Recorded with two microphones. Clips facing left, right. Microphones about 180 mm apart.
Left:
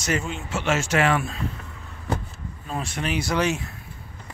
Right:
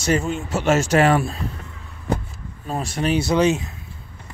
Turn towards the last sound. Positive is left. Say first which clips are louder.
# right 6 dB
turn(degrees=-20)  # may be behind; listen again after turning